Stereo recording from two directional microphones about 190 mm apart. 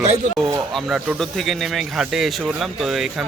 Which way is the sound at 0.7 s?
Centre (ahead or behind).